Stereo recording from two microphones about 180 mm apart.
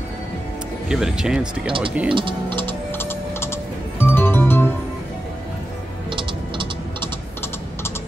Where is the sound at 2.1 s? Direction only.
25° right (ahead or behind).